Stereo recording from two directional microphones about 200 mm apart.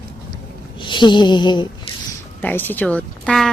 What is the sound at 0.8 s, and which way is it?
Speech, 25° left (ahead or behind).